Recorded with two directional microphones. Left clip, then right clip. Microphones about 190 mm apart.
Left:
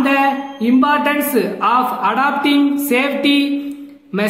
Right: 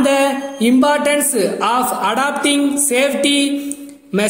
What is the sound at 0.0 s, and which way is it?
A man's voice, 25° right (ahead or behind).